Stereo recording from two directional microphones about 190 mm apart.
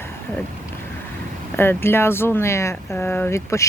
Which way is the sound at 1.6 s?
10° left (ahead or behind).